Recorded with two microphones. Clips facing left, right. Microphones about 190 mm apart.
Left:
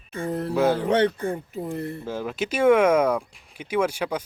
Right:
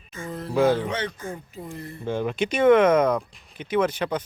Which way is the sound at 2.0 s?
5° left (ahead or behind).